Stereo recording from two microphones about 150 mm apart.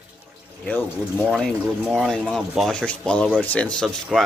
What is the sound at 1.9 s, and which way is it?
Speech, centre (ahead or behind).